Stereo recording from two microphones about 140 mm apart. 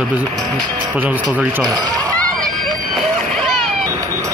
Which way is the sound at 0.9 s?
10° right (ahead or behind).